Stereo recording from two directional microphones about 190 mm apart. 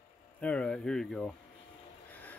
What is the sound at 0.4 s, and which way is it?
Speech, 5° left (ahead or behind).